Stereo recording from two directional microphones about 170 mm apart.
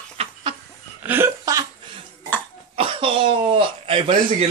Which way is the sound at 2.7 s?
35° right (ahead or behind).